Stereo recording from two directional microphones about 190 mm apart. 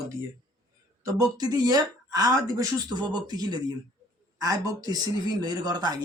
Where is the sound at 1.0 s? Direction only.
20° right (ahead or behind).